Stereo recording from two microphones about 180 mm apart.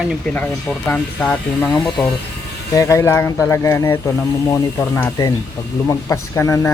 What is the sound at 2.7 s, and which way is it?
Speech, 15° left (ahead or behind).